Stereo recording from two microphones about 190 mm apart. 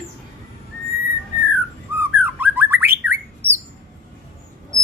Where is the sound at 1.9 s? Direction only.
10° right (ahead or behind).